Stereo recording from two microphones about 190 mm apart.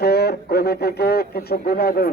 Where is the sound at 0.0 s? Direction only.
55° left (ahead or behind).